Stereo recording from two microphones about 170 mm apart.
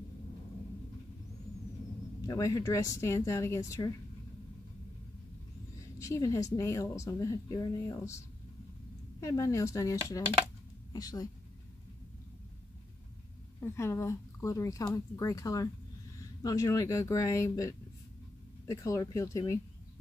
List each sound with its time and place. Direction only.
2.2 s speech: 20° left (ahead or behind)
5.9 s a woman's voice: 20° left (ahead or behind)
9.2 s speech: 15° left (ahead or behind)
10.4 s a sound: 20° left (ahead or behind)
13.6 s a woman's voice: 15° left (ahead or behind)